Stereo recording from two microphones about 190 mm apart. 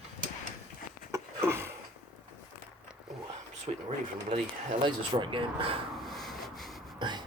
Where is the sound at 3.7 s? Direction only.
30° right (ahead or behind).